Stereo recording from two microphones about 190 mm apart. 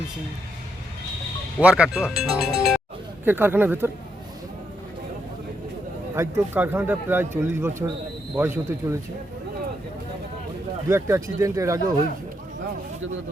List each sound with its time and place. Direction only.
1.5 s music: 5° right (ahead or behind)
3.2 s a man's voice: 10° right (ahead or behind)
6.1 s a man's voice: 10° right (ahead or behind)
10.8 s a man's voice: 15° right (ahead or behind)